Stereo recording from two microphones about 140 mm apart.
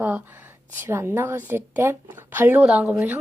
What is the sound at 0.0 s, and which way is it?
A woman's voice, 10° right (ahead or behind).